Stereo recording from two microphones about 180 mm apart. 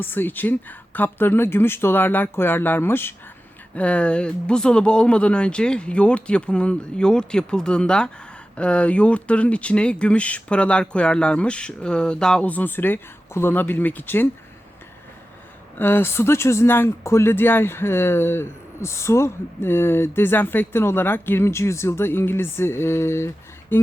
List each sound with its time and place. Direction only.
0.0 s speech: 10° left (ahead or behind)
15.8 s speech: 10° left (ahead or behind)